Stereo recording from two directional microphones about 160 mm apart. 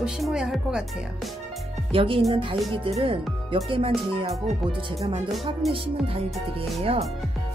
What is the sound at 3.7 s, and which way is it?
Speech, 35° right (ahead or behind).